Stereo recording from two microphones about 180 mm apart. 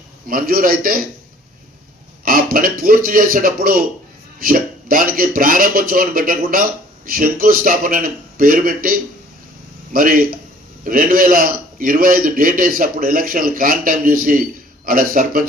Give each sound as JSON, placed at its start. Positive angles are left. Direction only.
{"t": 0.3, "sound": "speech", "side_deg": -50}
{"t": 2.2, "sound": "speech", "side_deg": -55}
{"t": 4.4, "sound": "a sound", "side_deg": -50}
{"t": 5.1, "sound": "speech", "side_deg": -50}